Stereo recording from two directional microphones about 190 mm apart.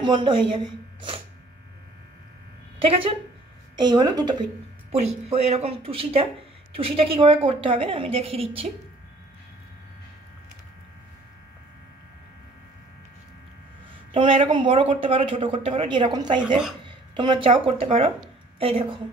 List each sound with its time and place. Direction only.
0.0 s speech: 25° right (ahead or behind)
2.9 s speech: 30° right (ahead or behind)
5.3 s speech: 35° right (ahead or behind)
14.1 s speech: 30° right (ahead or behind)